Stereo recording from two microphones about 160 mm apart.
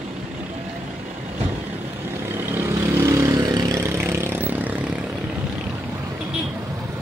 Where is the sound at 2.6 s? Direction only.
15° right (ahead or behind).